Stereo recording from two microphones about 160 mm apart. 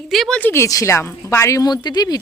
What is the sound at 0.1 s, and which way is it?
Speech, centre (ahead or behind).